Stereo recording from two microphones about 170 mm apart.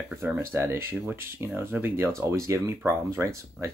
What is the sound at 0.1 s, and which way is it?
Speech, 15° right (ahead or behind).